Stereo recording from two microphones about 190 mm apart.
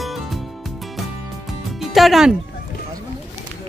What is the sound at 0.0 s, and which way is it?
Music, centre (ahead or behind).